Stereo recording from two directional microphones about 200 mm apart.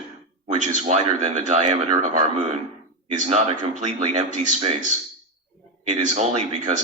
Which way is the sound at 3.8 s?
40° right (ahead or behind).